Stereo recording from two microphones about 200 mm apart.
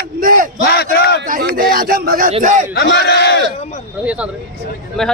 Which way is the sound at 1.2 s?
45° right (ahead or behind).